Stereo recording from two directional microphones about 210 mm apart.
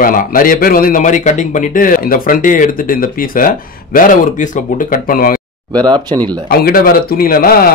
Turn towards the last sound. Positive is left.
turn(degrees=45)  # may be behind; listen again after turning